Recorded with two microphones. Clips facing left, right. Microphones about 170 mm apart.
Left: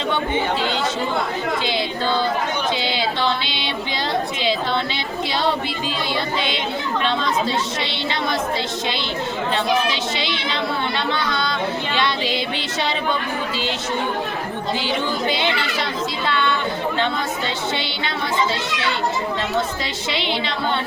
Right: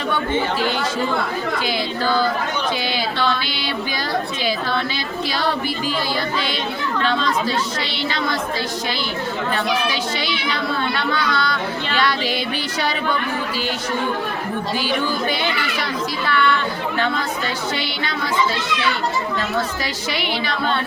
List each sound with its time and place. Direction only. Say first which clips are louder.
1.6 s singing: right 1 dB; 20° left (ahead or behind)
2.9 s a sound: even; 20° left (ahead or behind)
7.0 s speech: right 1 dB; 25° left (ahead or behind)
9.9 s speech: right 1 dB; 25° left (ahead or behind)
14.8 s a woman's voice: even; 25° left (ahead or behind)
20.1 s speech: left 1 dB; 25° left (ahead or behind)